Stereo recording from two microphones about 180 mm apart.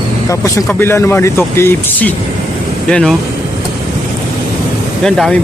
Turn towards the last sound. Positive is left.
turn(degrees=5)  # may be behind; listen again after turning